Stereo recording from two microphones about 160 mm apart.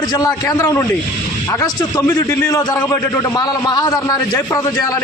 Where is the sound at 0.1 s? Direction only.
20° left (ahead or behind).